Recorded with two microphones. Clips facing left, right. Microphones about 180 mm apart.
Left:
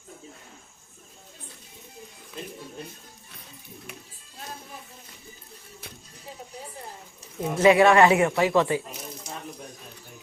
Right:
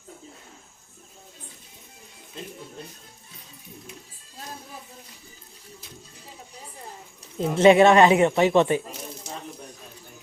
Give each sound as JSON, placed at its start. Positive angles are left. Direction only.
{"t": 7.3, "sound": "speech", "side_deg": -25}